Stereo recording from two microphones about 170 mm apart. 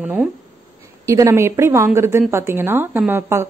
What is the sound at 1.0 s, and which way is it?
Speech, 20° right (ahead or behind).